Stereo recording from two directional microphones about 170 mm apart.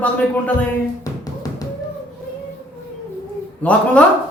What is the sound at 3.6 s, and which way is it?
Speech, 10° left (ahead or behind).